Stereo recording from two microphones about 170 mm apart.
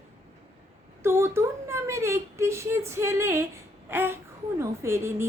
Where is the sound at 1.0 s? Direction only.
15° right (ahead or behind).